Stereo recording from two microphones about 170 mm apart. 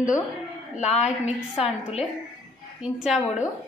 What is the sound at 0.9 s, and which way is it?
Speech, 40° left (ahead or behind).